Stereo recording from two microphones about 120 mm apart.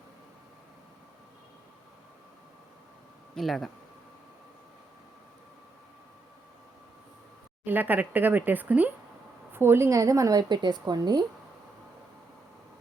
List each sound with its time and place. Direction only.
3.3 s speech: centre (ahead or behind)
7.6 s a woman's voice: 15° right (ahead or behind); by 11.2 s 35° right (ahead or behind)